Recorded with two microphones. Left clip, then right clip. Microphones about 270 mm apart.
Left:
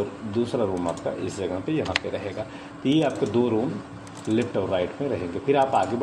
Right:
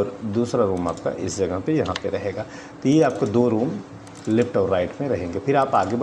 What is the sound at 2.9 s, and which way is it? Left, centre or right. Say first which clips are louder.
Speech: right 4 dB; right.